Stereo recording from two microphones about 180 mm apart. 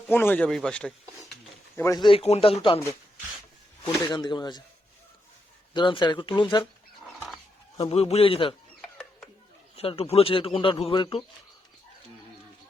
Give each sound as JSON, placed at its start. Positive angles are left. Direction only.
{"t": 0.1, "sound": "a man's voice", "side_deg": 10}
{"t": 1.7, "sound": "a man's voice", "side_deg": 15}
{"t": 3.8, "sound": "a man's voice", "side_deg": 25}
{"t": 5.7, "sound": "a man's voice", "side_deg": 25}
{"t": 7.8, "sound": "a man's voice", "side_deg": 35}
{"t": 8.8, "sound": "a sound", "side_deg": 5}
{"t": 9.7, "sound": "a man's voice", "side_deg": 30}